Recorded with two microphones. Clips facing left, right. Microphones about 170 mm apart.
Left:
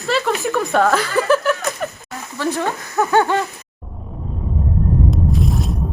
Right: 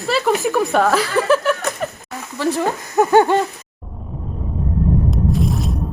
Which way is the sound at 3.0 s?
15° right (ahead or behind).